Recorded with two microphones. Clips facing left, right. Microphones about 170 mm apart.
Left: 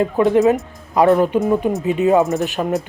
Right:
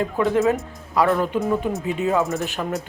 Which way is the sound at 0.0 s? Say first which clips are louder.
Left 5 dB; 20° left (ahead or behind).